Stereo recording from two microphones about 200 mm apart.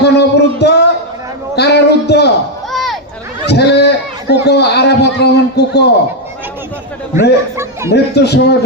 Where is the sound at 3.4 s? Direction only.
55° left (ahead or behind).